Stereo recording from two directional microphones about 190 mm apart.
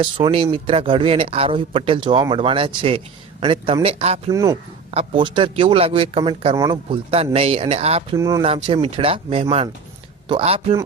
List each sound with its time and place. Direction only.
0.0 s speech: 30° right (ahead or behind)
4.3 s speech: 15° right (ahead or behind); by 8.0 s 30° right (ahead or behind)
8.1 s speech: 20° right (ahead or behind)